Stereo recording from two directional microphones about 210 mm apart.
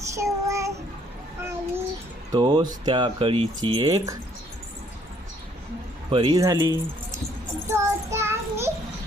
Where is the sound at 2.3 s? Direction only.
20° right (ahead or behind).